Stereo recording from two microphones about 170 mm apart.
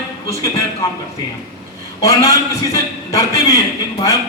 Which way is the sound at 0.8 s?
20° left (ahead or behind).